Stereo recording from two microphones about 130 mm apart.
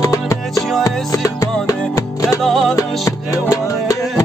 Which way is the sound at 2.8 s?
25° left (ahead or behind).